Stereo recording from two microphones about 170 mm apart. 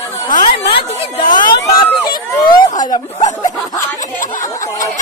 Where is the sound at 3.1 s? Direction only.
40° left (ahead or behind).